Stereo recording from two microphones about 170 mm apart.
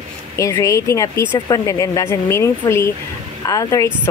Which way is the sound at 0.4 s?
20° left (ahead or behind).